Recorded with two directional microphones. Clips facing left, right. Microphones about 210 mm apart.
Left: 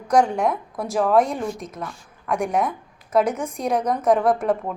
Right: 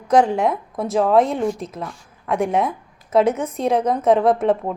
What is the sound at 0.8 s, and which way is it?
A woman's voice, 25° right (ahead or behind).